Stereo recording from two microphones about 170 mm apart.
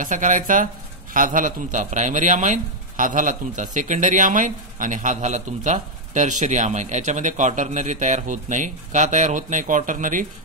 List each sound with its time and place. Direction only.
0.0 s speech: 50° right (ahead or behind)